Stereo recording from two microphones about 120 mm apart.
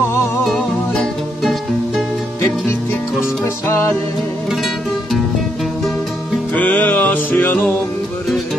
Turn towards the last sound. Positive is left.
turn(degrees=15)  # may be behind; listen again after turning